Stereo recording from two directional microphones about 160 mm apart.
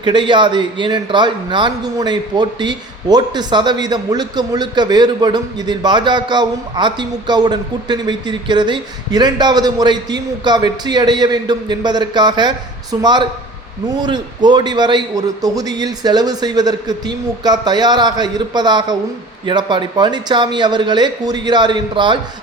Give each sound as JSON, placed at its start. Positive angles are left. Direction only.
{"t": 0.0, "sound": "a man's voice", "side_deg": -30}